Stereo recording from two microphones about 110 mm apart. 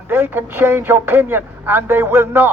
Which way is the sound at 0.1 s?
20° right (ahead or behind).